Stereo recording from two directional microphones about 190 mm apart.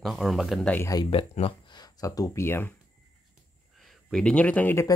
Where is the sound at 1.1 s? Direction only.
30° left (ahead or behind); by 2.7 s 10° left (ahead or behind).